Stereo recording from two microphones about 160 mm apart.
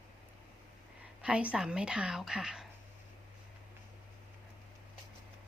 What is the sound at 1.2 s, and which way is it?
A woman's voice, 5° right (ahead or behind).